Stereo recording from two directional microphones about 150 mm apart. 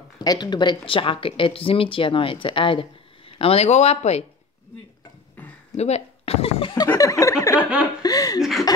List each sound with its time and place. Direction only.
0.2 s speech: 25° left (ahead or behind); by 4.2 s 45° left (ahead or behind)
5.8 s speech: 45° left (ahead or behind); by 8.4 s 25° left (ahead or behind)
8.4 s chuckle: centre (ahead or behind)